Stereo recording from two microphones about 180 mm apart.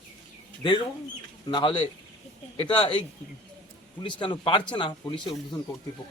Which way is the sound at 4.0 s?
25° left (ahead or behind).